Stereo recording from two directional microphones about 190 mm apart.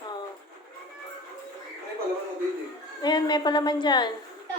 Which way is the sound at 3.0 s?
20° left (ahead or behind).